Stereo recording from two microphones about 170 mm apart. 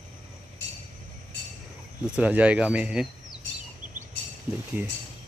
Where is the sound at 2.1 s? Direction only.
5° right (ahead or behind).